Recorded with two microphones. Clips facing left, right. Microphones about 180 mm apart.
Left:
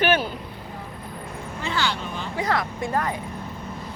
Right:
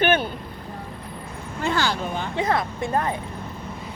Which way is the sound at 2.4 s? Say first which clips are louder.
Right 1 dB; 25° right (ahead or behind).